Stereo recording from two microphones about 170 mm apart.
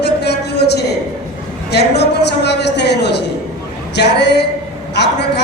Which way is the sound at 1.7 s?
75° left (ahead or behind).